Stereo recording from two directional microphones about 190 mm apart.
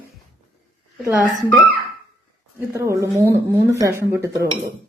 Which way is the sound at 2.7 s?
15° right (ahead or behind).